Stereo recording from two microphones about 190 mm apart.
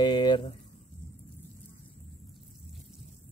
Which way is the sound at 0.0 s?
25° left (ahead or behind).